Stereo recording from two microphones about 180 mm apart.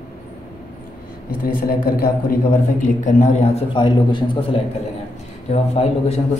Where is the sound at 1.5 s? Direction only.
55° left (ahead or behind).